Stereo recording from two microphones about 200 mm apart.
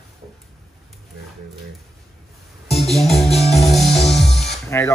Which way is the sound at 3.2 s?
30° left (ahead or behind).